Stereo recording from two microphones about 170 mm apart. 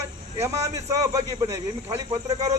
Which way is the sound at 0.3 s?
15° right (ahead or behind).